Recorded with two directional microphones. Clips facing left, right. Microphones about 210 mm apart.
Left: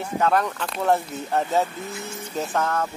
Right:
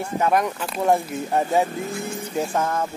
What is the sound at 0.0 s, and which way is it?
Speech, 10° right (ahead or behind).